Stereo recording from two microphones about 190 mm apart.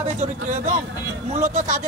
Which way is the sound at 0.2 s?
40° right (ahead or behind).